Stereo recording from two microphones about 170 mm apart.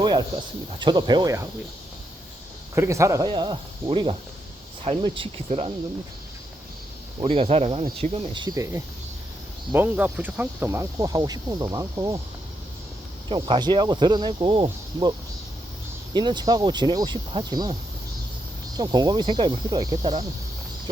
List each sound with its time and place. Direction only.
0.0 s a sound: 25° right (ahead or behind)
0.8 s speech: 25° right (ahead or behind)
2.7 s speech: 15° right (ahead or behind); by 5.7 s 35° right (ahead or behind)
7.2 s speech: 30° right (ahead or behind)
13.2 s speech: 25° right (ahead or behind)
16.1 s speech: 25° right (ahead or behind)
18.8 s speech: 25° right (ahead or behind)